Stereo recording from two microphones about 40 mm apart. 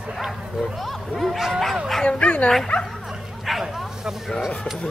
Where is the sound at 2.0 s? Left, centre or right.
Left.